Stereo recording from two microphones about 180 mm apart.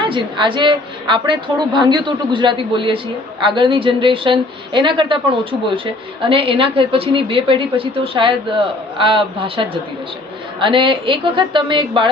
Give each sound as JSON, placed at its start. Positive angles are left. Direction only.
{"t": 0.0, "sound": "a woman's voice", "side_deg": -30}